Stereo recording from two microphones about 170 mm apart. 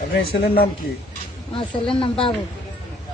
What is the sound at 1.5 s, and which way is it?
Speech, 30° left (ahead or behind).